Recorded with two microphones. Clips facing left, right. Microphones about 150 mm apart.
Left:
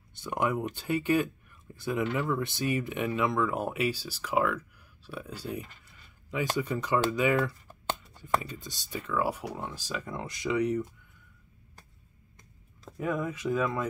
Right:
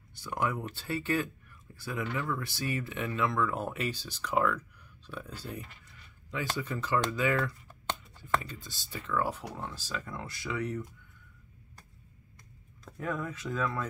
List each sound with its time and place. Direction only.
0.1 s speech: 20° left (ahead or behind)
12.9 s speech: 10° left (ahead or behind)